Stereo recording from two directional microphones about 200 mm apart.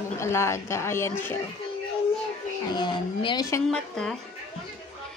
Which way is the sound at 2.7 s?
20° left (ahead or behind).